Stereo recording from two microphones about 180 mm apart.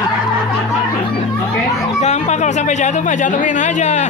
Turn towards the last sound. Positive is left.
turn(degrees=40)  # may be behind; listen again after turning